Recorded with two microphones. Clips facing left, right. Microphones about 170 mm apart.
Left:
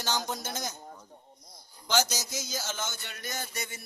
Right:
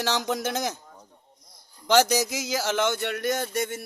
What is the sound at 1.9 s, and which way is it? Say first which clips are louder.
Speech: right 9 dB; 65° right (ahead or behind).